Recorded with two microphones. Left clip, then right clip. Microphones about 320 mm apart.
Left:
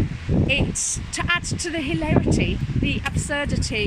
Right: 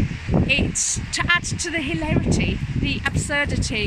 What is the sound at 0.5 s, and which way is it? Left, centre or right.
A woman's voice, centre.